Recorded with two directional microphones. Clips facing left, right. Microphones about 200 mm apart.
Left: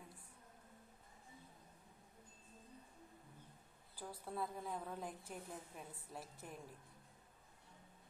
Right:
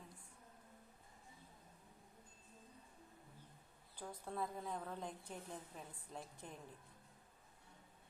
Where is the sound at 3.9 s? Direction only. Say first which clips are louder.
Even; 5° left (ahead or behind).